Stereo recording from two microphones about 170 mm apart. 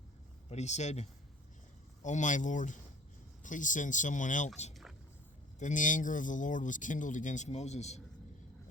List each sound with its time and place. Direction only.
0.5 s speech: 40° left (ahead or behind)
4.7 s a sound: centre (ahead or behind)
5.5 s speech: 50° left (ahead or behind)